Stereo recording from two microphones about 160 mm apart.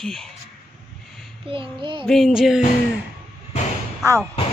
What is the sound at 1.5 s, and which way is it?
Child singing, 30° right (ahead or behind).